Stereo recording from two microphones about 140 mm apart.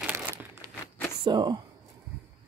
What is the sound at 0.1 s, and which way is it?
Crumpling, 15° right (ahead or behind).